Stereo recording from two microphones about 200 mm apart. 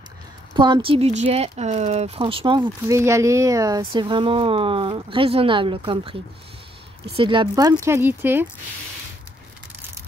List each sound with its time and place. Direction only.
0.6 s speech: 25° right (ahead or behind)
3.0 s speech: 15° right (ahead or behind)
7.2 s speech: 25° right (ahead or behind)